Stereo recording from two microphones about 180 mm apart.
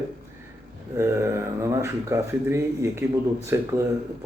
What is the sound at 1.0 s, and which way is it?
Speech, 15° right (ahead or behind).